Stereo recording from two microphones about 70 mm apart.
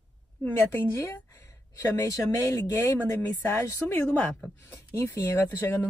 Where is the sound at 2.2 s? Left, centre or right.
Left.